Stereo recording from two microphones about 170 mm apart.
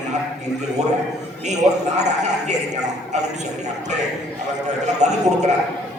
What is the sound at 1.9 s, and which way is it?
A man's voice, 45° right (ahead or behind).